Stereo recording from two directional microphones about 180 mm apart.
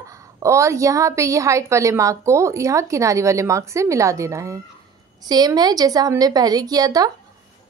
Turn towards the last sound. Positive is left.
turn(degrees=-20)  # may be behind; listen again after turning